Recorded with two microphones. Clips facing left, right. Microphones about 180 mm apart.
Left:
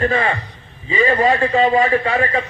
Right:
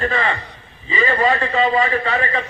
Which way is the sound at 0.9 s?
45° left (ahead or behind).